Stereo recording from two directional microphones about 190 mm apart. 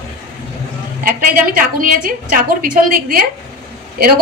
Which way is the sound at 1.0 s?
50° right (ahead or behind).